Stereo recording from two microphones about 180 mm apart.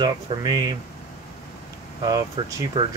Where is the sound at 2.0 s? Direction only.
20° right (ahead or behind).